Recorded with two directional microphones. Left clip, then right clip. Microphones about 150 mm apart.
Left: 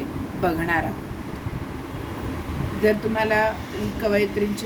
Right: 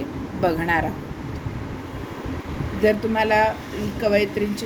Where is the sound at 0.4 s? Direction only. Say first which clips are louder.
Right 2 dB; 25° right (ahead or behind).